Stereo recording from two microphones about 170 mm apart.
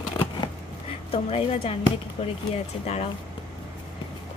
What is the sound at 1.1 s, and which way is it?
Speech, 35° left (ahead or behind).